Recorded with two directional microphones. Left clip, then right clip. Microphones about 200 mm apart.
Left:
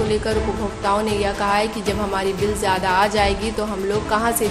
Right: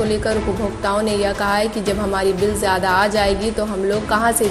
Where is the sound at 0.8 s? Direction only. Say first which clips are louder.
Right 1 dB; 15° right (ahead or behind).